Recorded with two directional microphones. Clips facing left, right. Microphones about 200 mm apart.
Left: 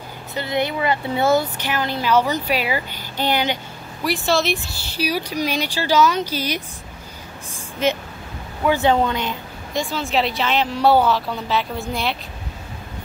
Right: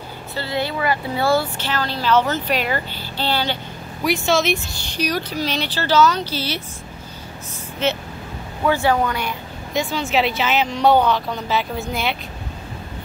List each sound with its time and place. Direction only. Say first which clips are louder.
0.4 s speech: left 1 dB; 20° left (ahead or behind)
4.0 s a woman's voice: right 1 dB; centre (ahead or behind)
7.8 s speech: left 1 dB; 10° left (ahead or behind)
9.8 s a woman's voice: right 1 dB; centre (ahead or behind)